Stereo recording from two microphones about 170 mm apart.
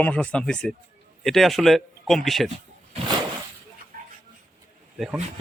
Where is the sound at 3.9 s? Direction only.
55° right (ahead or behind).